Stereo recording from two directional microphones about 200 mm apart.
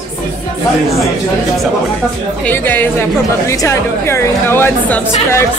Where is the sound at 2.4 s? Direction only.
10° left (ahead or behind).